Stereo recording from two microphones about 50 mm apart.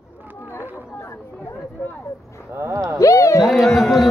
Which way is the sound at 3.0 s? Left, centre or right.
Left.